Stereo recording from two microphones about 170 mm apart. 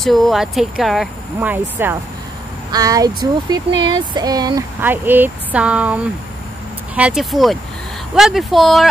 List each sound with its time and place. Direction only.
0.0 s speech: centre (ahead or behind); by 4.6 s 20° right (ahead or behind)
4.7 s speech: 10° right (ahead or behind)
7.0 s speech: 5° right (ahead or behind)